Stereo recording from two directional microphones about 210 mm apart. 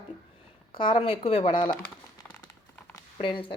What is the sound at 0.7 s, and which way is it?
Speech, 25° left (ahead or behind).